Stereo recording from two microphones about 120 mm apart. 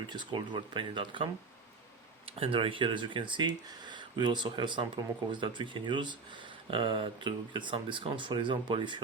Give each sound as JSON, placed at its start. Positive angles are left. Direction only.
{"t": 0.1, "sound": "speech", "side_deg": -40}